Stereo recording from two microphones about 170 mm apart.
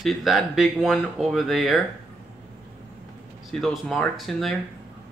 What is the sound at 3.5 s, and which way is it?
Speech, centre (ahead or behind).